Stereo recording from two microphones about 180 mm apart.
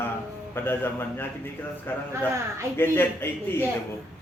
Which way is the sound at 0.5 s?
10° left (ahead or behind).